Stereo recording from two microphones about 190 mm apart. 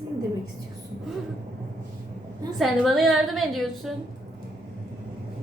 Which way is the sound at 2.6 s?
Centre (ahead or behind).